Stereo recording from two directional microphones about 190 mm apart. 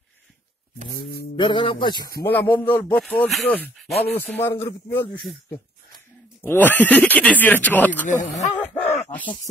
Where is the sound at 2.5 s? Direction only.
10° left (ahead or behind).